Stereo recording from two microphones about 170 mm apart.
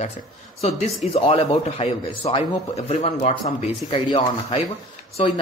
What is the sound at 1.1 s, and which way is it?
Speech, 35° left (ahead or behind).